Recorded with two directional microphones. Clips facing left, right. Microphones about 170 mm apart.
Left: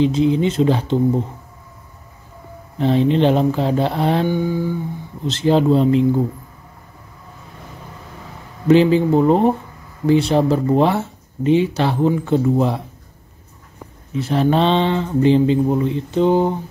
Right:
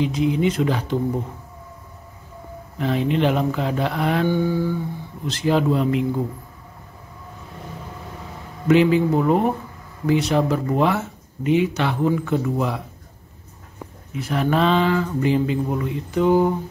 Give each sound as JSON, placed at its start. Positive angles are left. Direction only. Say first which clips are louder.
{"t": 0.0, "sound": "speech", "louder": "left 4 dB", "side_deg": 30}
{"t": 2.8, "sound": "speech", "louder": "left 5 dB", "side_deg": 30}
{"t": 4.3, "sound": "humming", "louder": "left 1 dB", "side_deg": 15}
{"t": 5.2, "sound": "speech", "louder": "left 4 dB", "side_deg": 25}
{"t": 8.6, "sound": "speech", "louder": "left 3 dB", "side_deg": 30}
{"t": 14.1, "sound": "speech", "louder": "left 4 dB", "side_deg": 30}